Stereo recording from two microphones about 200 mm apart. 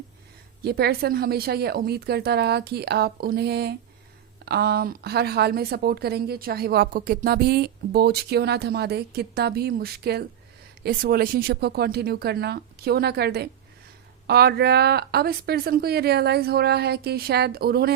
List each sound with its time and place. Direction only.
0.6 s speech: 50° right (ahead or behind)